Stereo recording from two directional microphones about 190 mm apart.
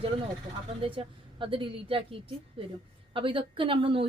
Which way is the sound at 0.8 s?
30° right (ahead or behind).